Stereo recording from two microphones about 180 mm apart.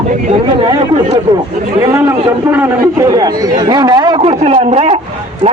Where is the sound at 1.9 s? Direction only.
10° right (ahead or behind).